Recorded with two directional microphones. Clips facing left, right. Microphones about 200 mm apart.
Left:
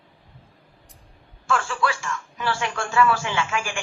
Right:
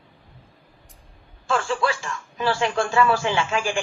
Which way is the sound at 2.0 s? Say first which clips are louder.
Right 3 dB; 30° right (ahead or behind).